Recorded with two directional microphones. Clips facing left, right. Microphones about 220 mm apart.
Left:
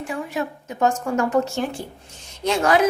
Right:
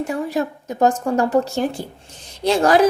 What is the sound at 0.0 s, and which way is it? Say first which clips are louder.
A woman's voice: right 5 dB; 40° right (ahead or behind).